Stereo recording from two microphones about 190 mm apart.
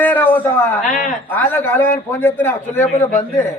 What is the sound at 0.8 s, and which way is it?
Speech, 40° left (ahead or behind).